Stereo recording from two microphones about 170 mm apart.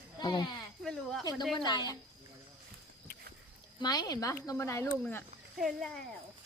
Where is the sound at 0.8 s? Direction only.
Centre (ahead or behind).